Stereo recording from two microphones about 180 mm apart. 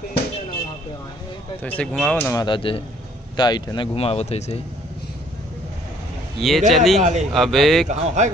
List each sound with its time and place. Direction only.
1.6 s speech: 10° left (ahead or behind)
2.3 s speech: 25° left (ahead or behind)
6.3 s speech: centre (ahead or behind)
7.0 s a man's voice: 40° right (ahead or behind)
7.3 s speech: centre (ahead or behind)
7.9 s a man's voice: 40° right (ahead or behind)